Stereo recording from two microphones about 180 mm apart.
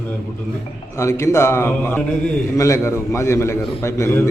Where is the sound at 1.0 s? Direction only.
15° left (ahead or behind).